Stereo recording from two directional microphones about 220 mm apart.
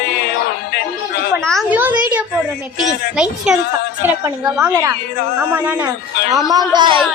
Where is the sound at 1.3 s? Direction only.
Centre (ahead or behind).